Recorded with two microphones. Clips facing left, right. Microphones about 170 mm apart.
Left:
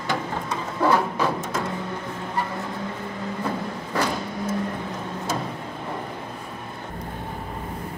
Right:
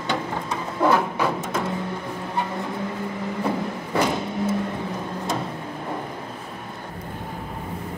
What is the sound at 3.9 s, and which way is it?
Vehicle, 20° right (ahead or behind).